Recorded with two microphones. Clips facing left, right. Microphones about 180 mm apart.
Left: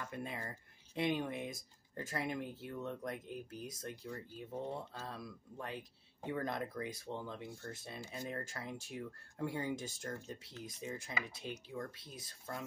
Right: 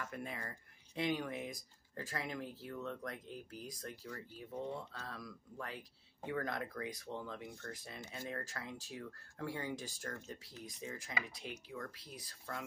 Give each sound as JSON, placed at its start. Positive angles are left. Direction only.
{"t": 0.0, "sound": "speech", "side_deg": 25}